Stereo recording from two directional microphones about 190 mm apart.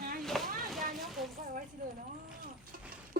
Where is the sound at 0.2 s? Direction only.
Centre (ahead or behind).